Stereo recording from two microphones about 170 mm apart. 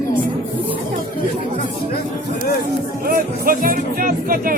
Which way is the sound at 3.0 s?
55° right (ahead or behind).